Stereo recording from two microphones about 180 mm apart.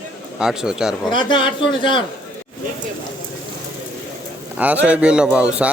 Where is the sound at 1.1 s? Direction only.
25° left (ahead or behind).